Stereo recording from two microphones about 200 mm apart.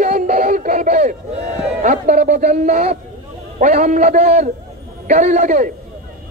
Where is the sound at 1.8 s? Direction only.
40° right (ahead or behind).